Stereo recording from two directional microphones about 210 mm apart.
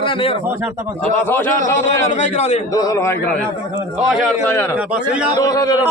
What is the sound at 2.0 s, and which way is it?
Speech, 35° left (ahead or behind).